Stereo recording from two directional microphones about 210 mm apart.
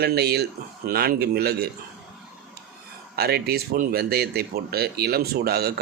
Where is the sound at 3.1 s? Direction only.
50° right (ahead or behind).